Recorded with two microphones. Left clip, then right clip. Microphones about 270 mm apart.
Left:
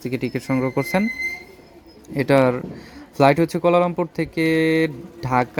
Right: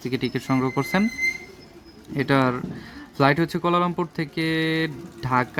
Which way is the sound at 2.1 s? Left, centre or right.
Centre.